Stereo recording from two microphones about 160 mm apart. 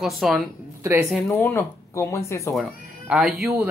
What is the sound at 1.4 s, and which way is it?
Speech, 15° left (ahead or behind).